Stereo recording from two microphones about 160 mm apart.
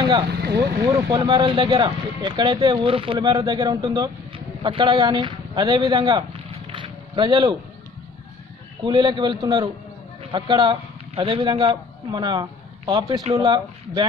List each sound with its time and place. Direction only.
0.3 s vehicle: 90° right
1.1 s speech: 25° right (ahead or behind)
6.7 s a sound: 30° right (ahead or behind)
8.8 s a man's voice: 30° right (ahead or behind)